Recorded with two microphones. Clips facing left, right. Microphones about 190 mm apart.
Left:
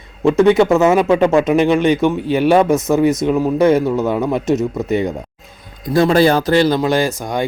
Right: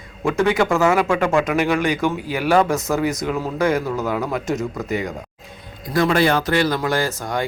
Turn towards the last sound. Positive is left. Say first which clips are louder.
# left 5 dB
turn(degrees=15)  # may be behind; listen again after turning